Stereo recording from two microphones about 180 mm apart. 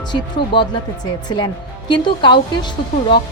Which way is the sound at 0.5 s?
25° left (ahead or behind).